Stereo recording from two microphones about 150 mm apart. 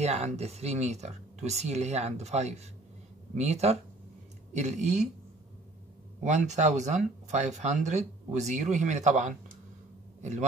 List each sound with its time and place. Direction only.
0.0 s speech: 45° right (ahead or behind)
6.2 s speech: 50° right (ahead or behind)